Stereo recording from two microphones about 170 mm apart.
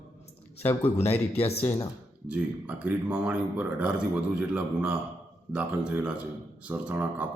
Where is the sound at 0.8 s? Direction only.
40° left (ahead or behind).